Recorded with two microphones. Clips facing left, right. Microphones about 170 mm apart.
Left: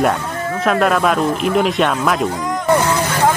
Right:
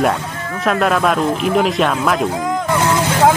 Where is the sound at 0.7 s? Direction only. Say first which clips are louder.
Even; centre (ahead or behind).